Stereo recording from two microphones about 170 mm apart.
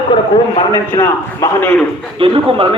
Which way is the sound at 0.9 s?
15° left (ahead or behind).